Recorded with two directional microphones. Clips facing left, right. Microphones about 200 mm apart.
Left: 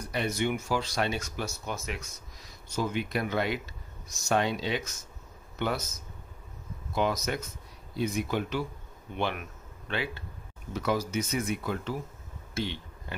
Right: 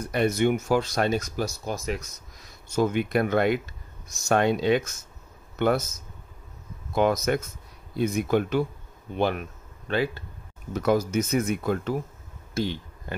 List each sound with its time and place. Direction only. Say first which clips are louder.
0.1 s speech: right 7 dB; 50° right (ahead or behind)
2.7 s speech: right 7 dB; 55° right (ahead or behind)
7.0 s speech: right 6 dB; 50° right (ahead or behind)
9.1 s speech: right 6 dB; 35° right (ahead or behind)